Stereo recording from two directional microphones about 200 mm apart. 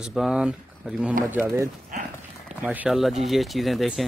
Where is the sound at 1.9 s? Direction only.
40° right (ahead or behind).